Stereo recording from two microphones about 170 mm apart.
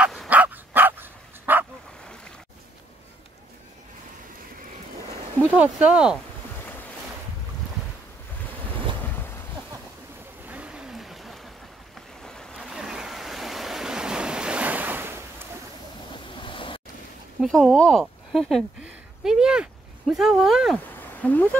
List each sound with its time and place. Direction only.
0.0 s dog: centre (ahead or behind)
0.3 s dog: 10° right (ahead or behind)
5.6 s speech: 10° right (ahead or behind)
9.0 s boat: 10° left (ahead or behind)
10.4 s vehicle: 10° right (ahead or behind)
12.2 s waves: 5° left (ahead or behind); by 15.4 s 10° right (ahead or behind)
16.1 s waves: 30° left (ahead or behind)
17.4 s speech: centre (ahead or behind)
21.2 s speech: 10° left (ahead or behind)